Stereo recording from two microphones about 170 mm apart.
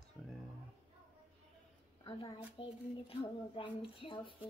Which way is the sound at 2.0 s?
30° left (ahead or behind).